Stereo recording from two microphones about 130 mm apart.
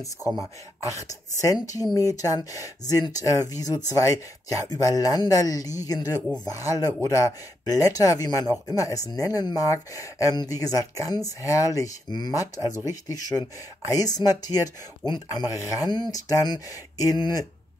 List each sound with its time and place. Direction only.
0.4 s speech: 25° left (ahead or behind)